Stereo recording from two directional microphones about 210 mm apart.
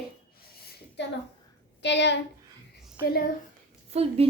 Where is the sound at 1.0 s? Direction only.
55° left (ahead or behind).